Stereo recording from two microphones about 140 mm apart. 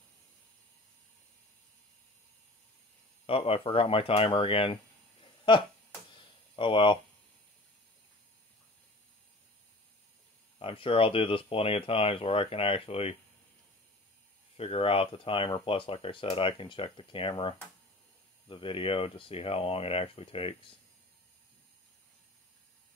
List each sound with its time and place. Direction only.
3.3 s speech: 45° left (ahead or behind)
5.2 s a sound: 35° left (ahead or behind)
10.6 s speech: 40° left (ahead or behind)
14.6 s speech: 45° left (ahead or behind)